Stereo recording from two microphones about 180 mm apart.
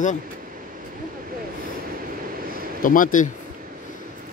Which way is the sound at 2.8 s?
50° left (ahead or behind).